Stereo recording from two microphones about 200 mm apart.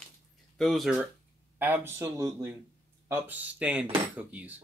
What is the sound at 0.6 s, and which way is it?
Speech, centre (ahead or behind).